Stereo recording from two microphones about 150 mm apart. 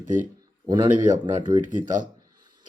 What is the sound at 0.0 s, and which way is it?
Speech, 60° right (ahead or behind).